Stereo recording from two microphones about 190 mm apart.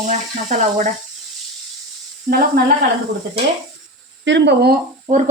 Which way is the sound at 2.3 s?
55° right (ahead or behind).